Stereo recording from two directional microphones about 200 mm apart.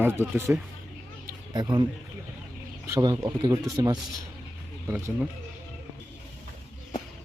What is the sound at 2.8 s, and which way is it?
Speech, 20° right (ahead or behind).